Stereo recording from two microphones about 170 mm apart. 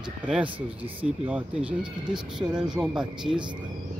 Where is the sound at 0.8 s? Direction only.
35° right (ahead or behind).